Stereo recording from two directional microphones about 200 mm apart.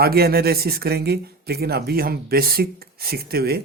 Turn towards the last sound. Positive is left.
turn(degrees=-50)  # may be behind; listen again after turning